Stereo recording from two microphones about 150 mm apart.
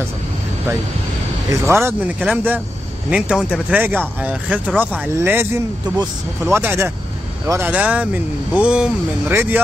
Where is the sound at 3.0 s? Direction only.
5° right (ahead or behind).